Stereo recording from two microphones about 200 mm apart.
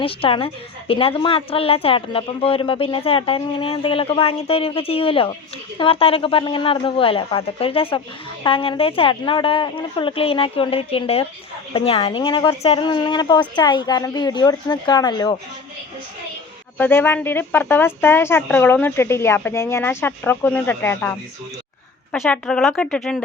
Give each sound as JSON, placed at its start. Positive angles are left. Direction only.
{"t": 0.0, "sound": "a woman's voice", "side_deg": 25}
{"t": 16.7, "sound": "speech", "side_deg": 10}